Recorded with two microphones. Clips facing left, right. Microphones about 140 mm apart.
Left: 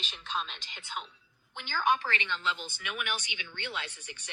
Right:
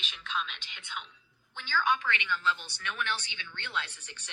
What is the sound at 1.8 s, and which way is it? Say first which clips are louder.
Speech: left 1 dB; 40° left (ahead or behind).